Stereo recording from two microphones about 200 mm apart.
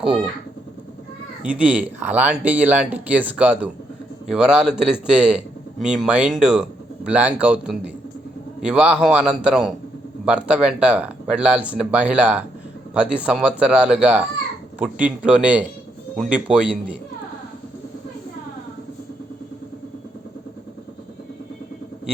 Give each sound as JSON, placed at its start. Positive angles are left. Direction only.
{"t": 1.4, "sound": "speech", "side_deg": -5}